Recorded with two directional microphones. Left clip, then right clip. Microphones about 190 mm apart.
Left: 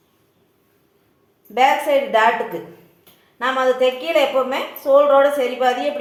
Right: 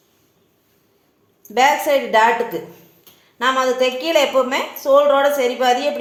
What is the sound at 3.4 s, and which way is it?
A woman's voice, 40° right (ahead or behind).